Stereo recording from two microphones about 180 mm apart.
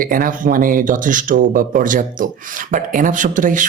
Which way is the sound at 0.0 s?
50° right (ahead or behind).